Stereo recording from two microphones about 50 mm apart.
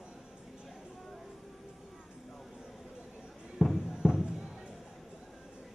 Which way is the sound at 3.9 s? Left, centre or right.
Centre.